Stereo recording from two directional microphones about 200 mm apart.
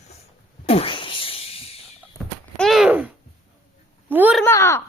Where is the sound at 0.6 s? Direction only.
30° left (ahead or behind).